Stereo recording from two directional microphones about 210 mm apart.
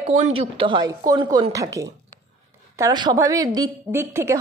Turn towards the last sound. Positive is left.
turn(degrees=-10)  # may be behind; listen again after turning